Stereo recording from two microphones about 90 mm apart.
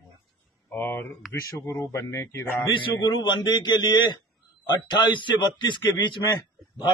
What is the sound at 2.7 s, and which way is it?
A man's voice, 60° left (ahead or behind).